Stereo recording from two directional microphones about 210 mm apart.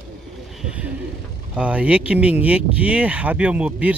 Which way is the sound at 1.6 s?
5° right (ahead or behind).